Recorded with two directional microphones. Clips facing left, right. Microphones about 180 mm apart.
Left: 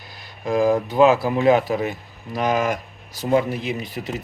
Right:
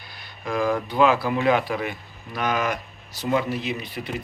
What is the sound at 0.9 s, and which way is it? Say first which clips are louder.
Speech: left 4 dB; 45° left (ahead or behind).